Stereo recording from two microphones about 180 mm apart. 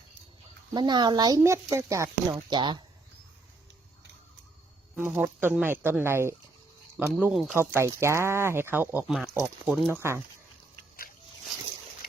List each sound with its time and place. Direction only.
0.7 s speech: 25° right (ahead or behind)
4.9 s speech: 10° right (ahead or behind)
10.0 s speech: 15° right (ahead or behind)